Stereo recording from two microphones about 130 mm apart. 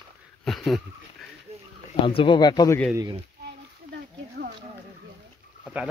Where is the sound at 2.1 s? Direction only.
40° left (ahead or behind).